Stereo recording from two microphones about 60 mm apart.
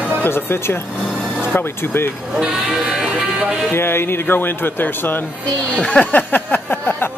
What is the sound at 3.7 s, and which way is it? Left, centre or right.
Speech, left.